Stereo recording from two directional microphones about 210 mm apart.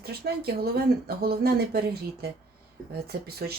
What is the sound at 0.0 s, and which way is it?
Speech, 50° right (ahead or behind).